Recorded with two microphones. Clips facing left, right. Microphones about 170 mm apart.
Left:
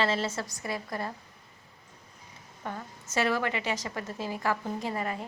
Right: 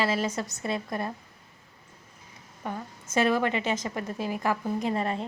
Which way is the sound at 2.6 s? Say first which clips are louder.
Right 3 dB; 15° right (ahead or behind).